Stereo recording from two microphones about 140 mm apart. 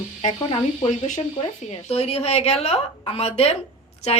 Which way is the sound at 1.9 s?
45° left (ahead or behind).